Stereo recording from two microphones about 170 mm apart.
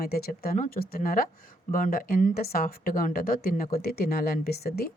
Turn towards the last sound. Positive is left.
turn(degrees=65)  # may be behind; listen again after turning